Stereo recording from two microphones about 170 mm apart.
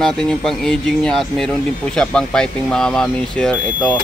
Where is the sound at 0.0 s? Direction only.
5° left (ahead or behind).